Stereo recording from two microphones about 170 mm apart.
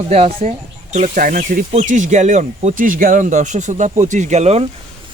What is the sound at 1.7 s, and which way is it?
Speech, 40° right (ahead or behind).